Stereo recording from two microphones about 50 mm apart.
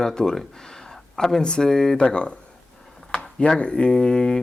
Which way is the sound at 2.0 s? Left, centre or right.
Left.